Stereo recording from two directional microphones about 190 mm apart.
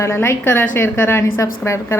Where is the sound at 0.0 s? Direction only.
15° left (ahead or behind).